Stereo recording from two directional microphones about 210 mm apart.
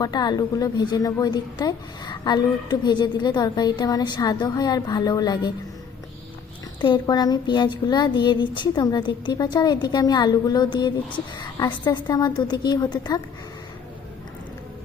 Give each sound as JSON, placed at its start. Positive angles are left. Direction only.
{"t": 0.0, "sound": "a woman's voice", "side_deg": 20}
{"t": 6.8, "sound": "a woman's voice", "side_deg": 20}